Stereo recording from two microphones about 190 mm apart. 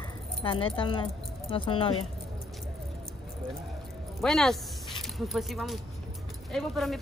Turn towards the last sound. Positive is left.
turn(degrees=0)  # may be behind; listen again after turning